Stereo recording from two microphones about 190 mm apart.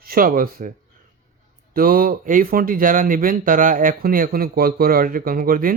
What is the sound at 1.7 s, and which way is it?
Speech, 50° right (ahead or behind).